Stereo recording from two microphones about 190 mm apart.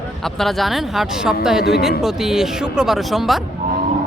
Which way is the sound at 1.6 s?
55° left (ahead or behind).